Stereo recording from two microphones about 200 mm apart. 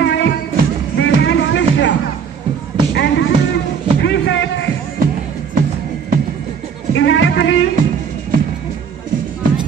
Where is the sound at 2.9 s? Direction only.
60° left (ahead or behind).